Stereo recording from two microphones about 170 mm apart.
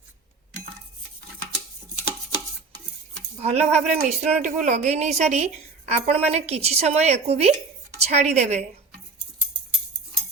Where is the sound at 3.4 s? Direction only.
40° right (ahead or behind).